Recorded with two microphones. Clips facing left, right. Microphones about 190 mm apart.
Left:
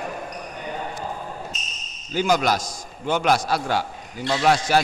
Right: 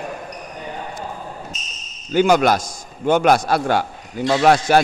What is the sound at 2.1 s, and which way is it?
A man's voice, 60° right (ahead or behind).